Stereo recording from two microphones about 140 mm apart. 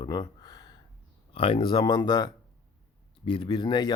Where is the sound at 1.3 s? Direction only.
40° left (ahead or behind).